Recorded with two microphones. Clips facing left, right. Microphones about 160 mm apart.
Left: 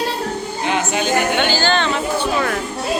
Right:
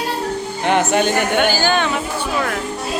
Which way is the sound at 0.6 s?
60° right (ahead or behind).